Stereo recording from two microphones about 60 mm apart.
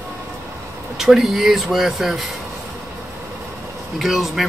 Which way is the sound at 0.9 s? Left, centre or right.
Centre.